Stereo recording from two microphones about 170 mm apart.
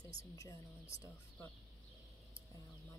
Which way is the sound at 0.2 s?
20° left (ahead or behind).